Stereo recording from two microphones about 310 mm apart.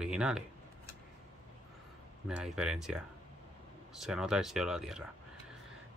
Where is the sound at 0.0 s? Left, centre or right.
Centre.